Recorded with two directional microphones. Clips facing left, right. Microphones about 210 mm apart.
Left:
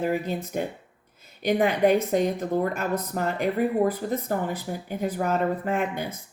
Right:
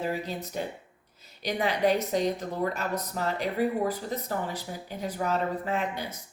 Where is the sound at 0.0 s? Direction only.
50° left (ahead or behind).